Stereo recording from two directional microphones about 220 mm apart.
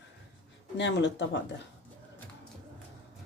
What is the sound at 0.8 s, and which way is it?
Speech, 55° left (ahead or behind).